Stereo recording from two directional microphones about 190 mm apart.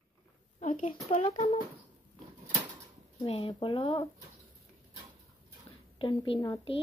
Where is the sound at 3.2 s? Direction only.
30° left (ahead or behind).